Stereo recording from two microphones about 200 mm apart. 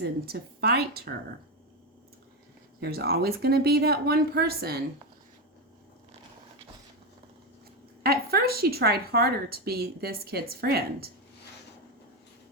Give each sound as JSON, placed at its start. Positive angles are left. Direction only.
{"t": 0.0, "sound": "a woman's voice", "side_deg": -50}
{"t": 2.8, "sound": "a woman's voice", "side_deg": -50}
{"t": 8.0, "sound": "a woman's voice", "side_deg": -50}